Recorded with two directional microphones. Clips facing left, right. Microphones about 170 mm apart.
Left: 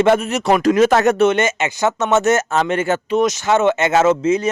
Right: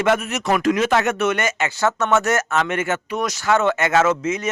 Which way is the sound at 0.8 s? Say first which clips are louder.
Left 6 dB; 40° left (ahead or behind).